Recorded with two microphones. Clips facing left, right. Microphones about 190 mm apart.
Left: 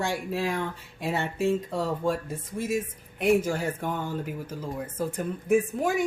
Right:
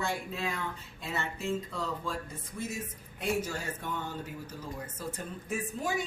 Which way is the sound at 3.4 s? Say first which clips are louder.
Left 9 dB; 65° left (ahead or behind).